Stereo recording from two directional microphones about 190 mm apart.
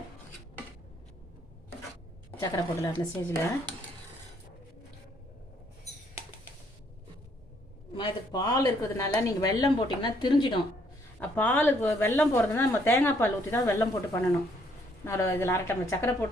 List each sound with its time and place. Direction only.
2.4 s a woman's voice: 20° left (ahead or behind)
7.9 s a woman's voice: 20° left (ahead or behind)
11.2 s speech: 10° left (ahead or behind)